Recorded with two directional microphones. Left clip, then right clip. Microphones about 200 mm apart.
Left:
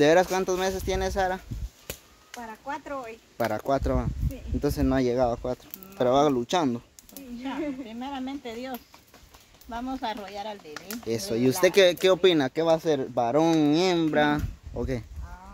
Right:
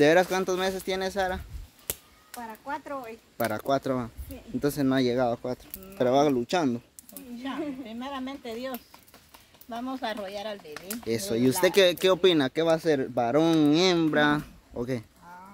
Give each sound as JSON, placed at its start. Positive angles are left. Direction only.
{"t": 0.0, "sound": "speech", "side_deg": -5}
{"t": 7.4, "sound": "speech", "side_deg": -40}
{"t": 11.1, "sound": "speech", "side_deg": -5}